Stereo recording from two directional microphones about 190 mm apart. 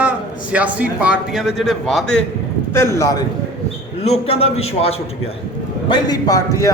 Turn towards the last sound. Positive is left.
turn(degrees=15)  # may be behind; listen again after turning